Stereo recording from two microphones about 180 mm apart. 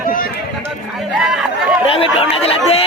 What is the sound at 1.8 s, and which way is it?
Speech, 30° left (ahead or behind).